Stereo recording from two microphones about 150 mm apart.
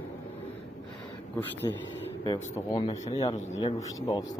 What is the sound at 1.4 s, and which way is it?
Speech, 15° left (ahead or behind).